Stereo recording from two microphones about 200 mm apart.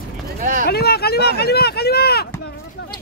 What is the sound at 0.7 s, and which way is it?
Speech, 50° left (ahead or behind).